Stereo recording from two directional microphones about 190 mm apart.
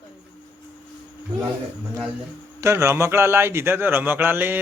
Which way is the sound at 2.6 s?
15° right (ahead or behind).